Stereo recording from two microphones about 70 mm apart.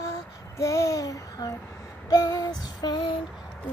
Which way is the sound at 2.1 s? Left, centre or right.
Left.